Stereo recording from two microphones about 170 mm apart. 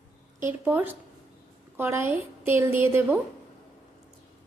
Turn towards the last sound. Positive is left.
turn(degrees=-10)  # may be behind; listen again after turning